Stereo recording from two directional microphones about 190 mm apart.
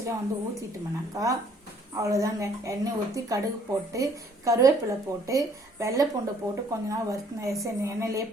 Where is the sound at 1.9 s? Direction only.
15° right (ahead or behind).